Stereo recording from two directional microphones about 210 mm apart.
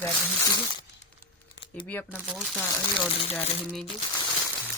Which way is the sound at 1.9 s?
10° left (ahead or behind).